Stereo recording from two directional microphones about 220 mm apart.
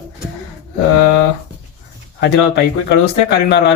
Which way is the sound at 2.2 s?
50° left (ahead or behind).